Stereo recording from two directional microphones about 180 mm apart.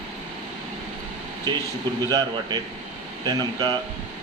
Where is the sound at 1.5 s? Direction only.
20° right (ahead or behind).